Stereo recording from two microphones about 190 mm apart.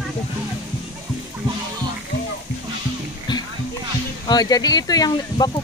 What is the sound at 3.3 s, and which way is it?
Music, 20° left (ahead or behind).